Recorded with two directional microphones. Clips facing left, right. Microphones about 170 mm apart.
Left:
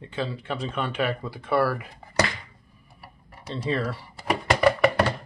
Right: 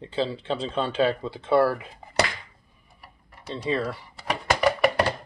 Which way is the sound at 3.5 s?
20° right (ahead or behind).